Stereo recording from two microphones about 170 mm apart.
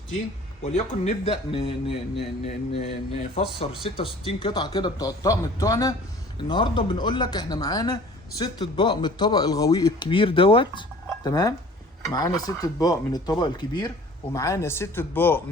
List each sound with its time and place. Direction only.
0.6 s speech: 40° left (ahead or behind); by 15.4 s 10° left (ahead or behind)